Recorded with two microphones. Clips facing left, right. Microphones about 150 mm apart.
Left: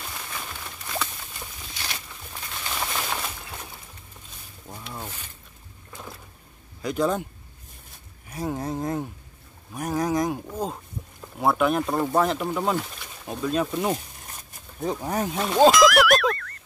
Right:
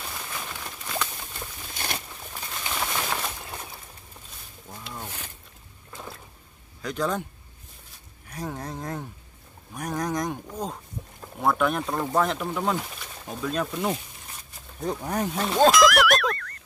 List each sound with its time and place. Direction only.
1.7 s a sound: 50° right (ahead or behind)
2.7 s bird: centre (ahead or behind)
4.6 s zipper: 10° left (ahead or behind)
6.8 s speech: 10° left (ahead or behind)
8.3 s speech: 10° left (ahead or behind)